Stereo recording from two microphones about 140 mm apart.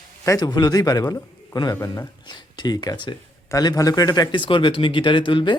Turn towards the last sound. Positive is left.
turn(degrees=35)  # may be behind; listen again after turning